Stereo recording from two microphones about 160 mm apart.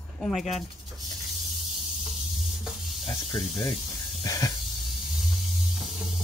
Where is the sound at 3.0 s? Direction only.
30° left (ahead or behind).